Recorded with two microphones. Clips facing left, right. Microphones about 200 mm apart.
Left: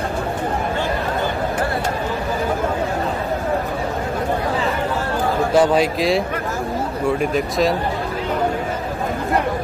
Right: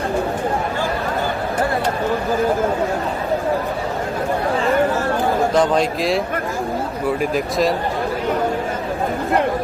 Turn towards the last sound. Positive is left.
turn(degrees=0)  # may be behind; listen again after turning